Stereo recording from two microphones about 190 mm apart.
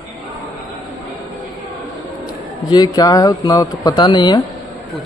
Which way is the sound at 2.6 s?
20° left (ahead or behind).